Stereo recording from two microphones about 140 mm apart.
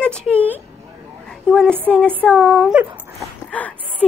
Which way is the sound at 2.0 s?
5° left (ahead or behind).